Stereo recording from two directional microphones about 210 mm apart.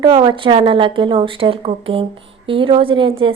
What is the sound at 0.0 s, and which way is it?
A woman's voice, 20° right (ahead or behind).